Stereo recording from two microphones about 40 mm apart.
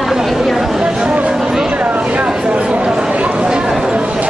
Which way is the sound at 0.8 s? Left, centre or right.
Right.